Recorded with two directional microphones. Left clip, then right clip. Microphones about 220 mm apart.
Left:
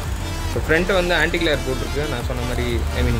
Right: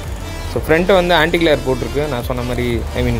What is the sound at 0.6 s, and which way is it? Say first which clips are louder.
Speech: right 6 dB; 25° right (ahead or behind).